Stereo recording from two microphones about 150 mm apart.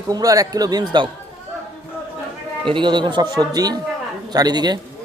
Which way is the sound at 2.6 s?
35° right (ahead or behind).